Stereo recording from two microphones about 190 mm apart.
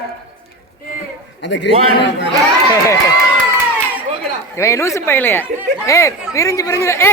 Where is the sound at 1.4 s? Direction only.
65° left (ahead or behind).